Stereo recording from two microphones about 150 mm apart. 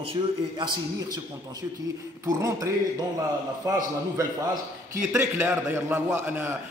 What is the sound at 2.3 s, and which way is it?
Speech, 20° right (ahead or behind).